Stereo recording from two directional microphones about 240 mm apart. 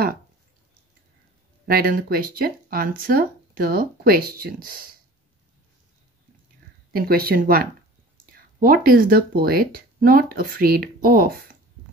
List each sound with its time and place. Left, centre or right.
1.7 s speech: right
6.9 s speech: right